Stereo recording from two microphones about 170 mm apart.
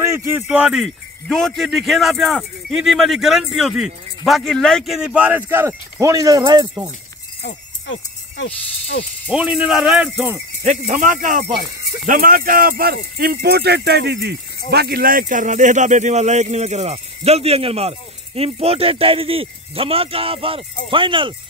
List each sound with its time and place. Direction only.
0.0 s speech: 15° right (ahead or behind)
7.4 s a sound: 90° left
9.3 s speech: 5° right (ahead or behind)
10.6 s speech: 45° right (ahead or behind); by 14.3 s 80° right
14.7 s speech: 70° right (ahead or behind); by 21.4 s 30° right (ahead or behind)